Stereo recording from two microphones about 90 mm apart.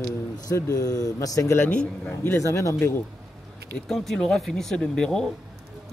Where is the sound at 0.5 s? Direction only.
40° left (ahead or behind).